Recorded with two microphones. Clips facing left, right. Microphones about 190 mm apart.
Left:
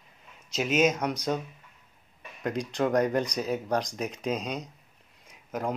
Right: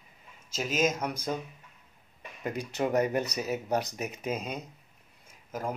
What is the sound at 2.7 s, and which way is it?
Speech, 5° right (ahead or behind).